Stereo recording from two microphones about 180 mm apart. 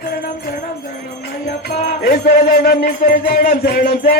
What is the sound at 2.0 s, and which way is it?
Music, 60° left (ahead or behind).